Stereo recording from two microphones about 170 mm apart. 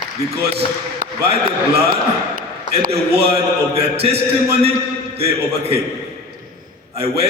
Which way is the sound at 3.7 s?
35° right (ahead or behind).